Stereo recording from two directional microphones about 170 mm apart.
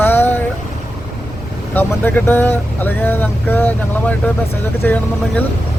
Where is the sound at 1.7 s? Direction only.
10° left (ahead or behind).